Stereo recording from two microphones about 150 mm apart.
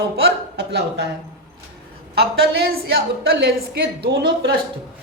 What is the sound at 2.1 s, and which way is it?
Speech, 90° right.